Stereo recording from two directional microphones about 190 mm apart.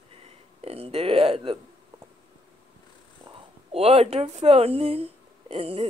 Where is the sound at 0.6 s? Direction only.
30° right (ahead or behind).